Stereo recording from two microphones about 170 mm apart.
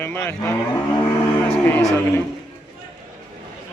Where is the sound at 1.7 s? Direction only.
20° left (ahead or behind).